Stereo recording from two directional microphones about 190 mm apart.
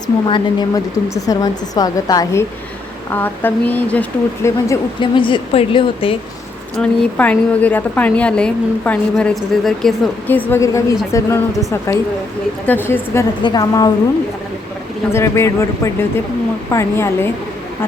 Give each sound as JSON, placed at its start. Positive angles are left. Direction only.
{"t": 0.3, "sound": "a woman's voice", "side_deg": 25}
{"t": 4.9, "sound": "speech", "side_deg": 25}
{"t": 6.7, "sound": "a woman's voice", "side_deg": 5}
{"t": 12.6, "sound": "a woman's voice", "side_deg": 10}
{"t": 13.4, "sound": "speech", "side_deg": 20}
{"t": 15.1, "sound": "a woman's voice", "side_deg": 15}